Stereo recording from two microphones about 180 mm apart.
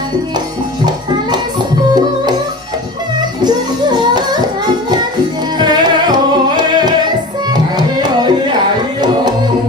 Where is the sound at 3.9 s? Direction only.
25° right (ahead or behind).